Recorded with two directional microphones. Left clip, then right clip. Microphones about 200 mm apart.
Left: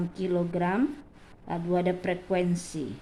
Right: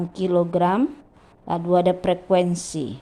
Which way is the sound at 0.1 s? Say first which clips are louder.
Right 10 dB; 30° right (ahead or behind).